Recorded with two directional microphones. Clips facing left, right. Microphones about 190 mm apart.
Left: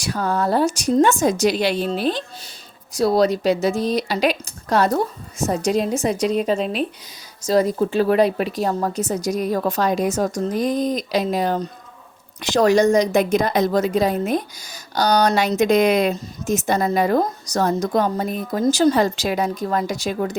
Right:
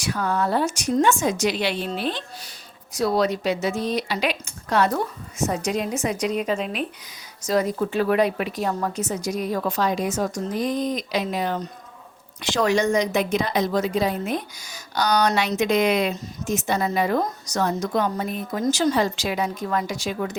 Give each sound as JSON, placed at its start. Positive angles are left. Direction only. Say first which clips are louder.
{"t": 0.0, "sound": "a woman's voice", "louder": "left 2 dB", "side_deg": 35}